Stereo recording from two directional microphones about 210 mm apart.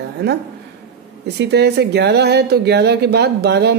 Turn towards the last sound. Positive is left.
turn(degrees=-50)  # may be behind; listen again after turning